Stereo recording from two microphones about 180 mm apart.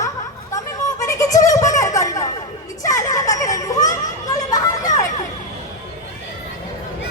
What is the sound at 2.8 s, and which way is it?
Children playing, 20° left (ahead or behind).